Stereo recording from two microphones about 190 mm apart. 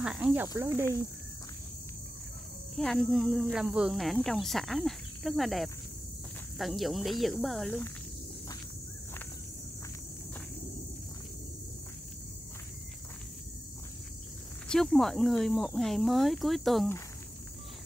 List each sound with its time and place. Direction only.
0.0 s speech: 5° right (ahead or behind)
2.7 s speech: centre (ahead or behind)
14.7 s speech: centre (ahead or behind)